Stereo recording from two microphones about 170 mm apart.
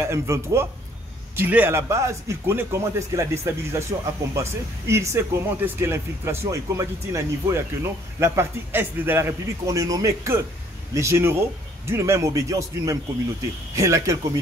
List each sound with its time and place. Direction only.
0.0 s speech: 15° right (ahead or behind)